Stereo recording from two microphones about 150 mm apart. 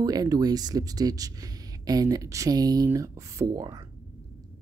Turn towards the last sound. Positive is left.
turn(degrees=-20)  # may be behind; listen again after turning